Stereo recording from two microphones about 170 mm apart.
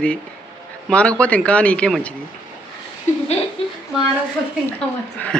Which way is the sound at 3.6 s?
35° left (ahead or behind).